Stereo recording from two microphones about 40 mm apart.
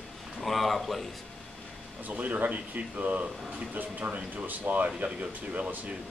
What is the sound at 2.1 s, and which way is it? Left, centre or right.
Speech, right.